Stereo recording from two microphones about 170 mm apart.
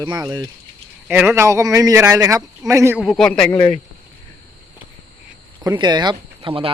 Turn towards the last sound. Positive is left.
turn(degrees=-30)  # may be behind; listen again after turning